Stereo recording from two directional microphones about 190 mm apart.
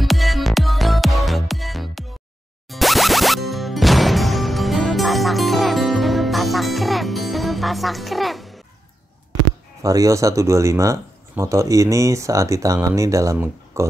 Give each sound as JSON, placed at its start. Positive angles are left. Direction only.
{"t": 0.0, "sound": "music", "side_deg": 0}
{"t": 9.8, "sound": "speech", "side_deg": -15}